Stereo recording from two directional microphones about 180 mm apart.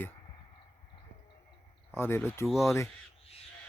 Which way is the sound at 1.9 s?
15° left (ahead or behind).